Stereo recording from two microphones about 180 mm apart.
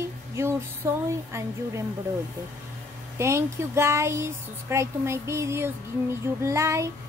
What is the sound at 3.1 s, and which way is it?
Speech, 15° right (ahead or behind).